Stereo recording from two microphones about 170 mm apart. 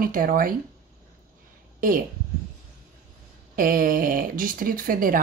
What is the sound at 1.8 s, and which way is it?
Speech, 55° right (ahead or behind).